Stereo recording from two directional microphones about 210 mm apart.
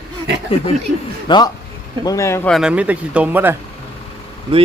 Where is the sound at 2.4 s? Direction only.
Centre (ahead or behind).